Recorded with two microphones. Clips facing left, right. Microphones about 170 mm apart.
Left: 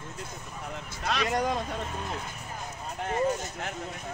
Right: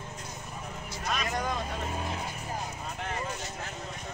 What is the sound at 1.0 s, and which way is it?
Vehicle, 75° left (ahead or behind).